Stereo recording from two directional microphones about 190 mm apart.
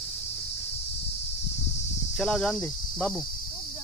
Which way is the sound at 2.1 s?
Centre (ahead or behind).